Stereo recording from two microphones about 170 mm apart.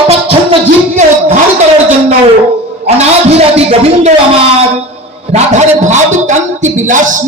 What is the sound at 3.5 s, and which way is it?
Speech, 40° right (ahead or behind).